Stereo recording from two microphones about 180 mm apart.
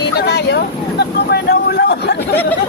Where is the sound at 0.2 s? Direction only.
65° left (ahead or behind).